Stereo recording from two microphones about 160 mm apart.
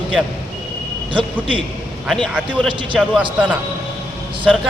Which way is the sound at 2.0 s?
5° left (ahead or behind).